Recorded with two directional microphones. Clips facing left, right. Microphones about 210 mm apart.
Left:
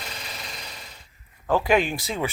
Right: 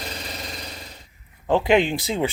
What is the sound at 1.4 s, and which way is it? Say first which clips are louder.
Speech: right 3 dB; 20° right (ahead or behind).